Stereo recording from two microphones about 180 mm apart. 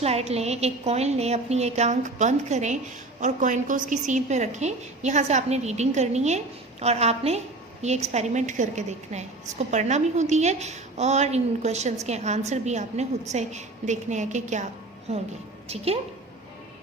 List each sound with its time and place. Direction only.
0.0 s a woman's voice: 35° right (ahead or behind)